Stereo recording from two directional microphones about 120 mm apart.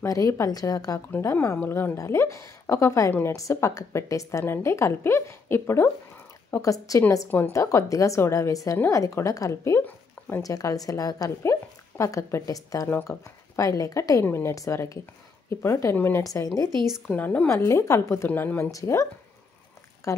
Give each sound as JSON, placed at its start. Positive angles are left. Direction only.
{"t": 0.0, "sound": "a woman's voice", "side_deg": 25}
{"t": 12.8, "sound": "a woman's voice", "side_deg": 20}
{"t": 17.1, "sound": "a woman's voice", "side_deg": 15}
{"t": 18.7, "sound": "a woman's voice", "side_deg": 25}
{"t": 20.1, "sound": "speech", "side_deg": 25}